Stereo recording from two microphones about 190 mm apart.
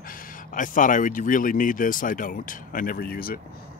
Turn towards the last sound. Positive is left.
turn(degrees=50)  # may be behind; listen again after turning